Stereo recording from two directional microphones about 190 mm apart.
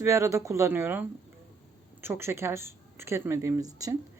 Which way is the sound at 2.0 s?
10° right (ahead or behind).